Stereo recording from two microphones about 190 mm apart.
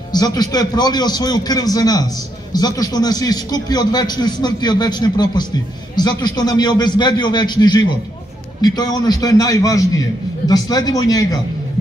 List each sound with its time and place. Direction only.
0.1 s a man's voice: 20° left (ahead or behind)